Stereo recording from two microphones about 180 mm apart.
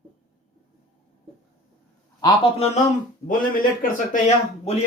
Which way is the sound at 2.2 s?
35° left (ahead or behind).